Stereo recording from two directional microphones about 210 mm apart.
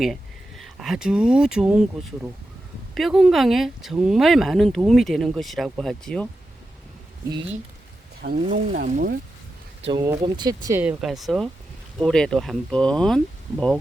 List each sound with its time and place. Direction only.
0.0 s speech: centre (ahead or behind)
2.9 s speech: centre (ahead or behind)
8.4 s speech: 35° right (ahead or behind)
9.8 s speech: 20° right (ahead or behind); by 13.7 s centre (ahead or behind)